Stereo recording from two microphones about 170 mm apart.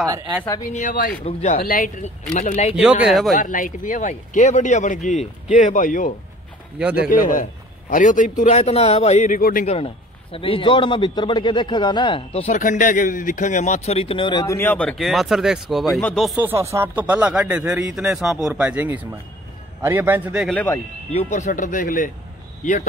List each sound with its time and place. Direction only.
0.0 s speech: 20° right (ahead or behind)
0.7 s a man's voice: 50° left (ahead or behind)
2.8 s speech: centre (ahead or behind)
3.3 s a man's voice: 50° left (ahead or behind)
9.4 s a man's voice: 55° left (ahead or behind)
9.7 s a man's voice: 35° left (ahead or behind); by 15.9 s centre (ahead or behind)
15.9 s speech: 10° left (ahead or behind)
16.3 s speech: 10° right (ahead or behind)
20.5 s speech: 15° left (ahead or behind)
21.1 s a man's voice: 40° left (ahead or behind)